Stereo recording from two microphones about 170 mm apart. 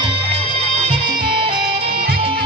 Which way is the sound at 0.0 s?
30° right (ahead or behind).